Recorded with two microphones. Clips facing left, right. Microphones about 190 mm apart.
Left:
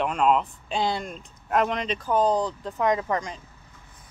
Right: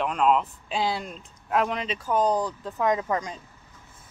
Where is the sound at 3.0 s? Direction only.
20° right (ahead or behind).